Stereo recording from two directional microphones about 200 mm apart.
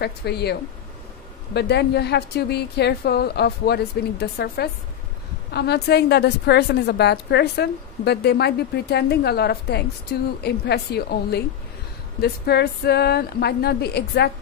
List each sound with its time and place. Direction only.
0.0 s a woman's voice: 55° left (ahead or behind)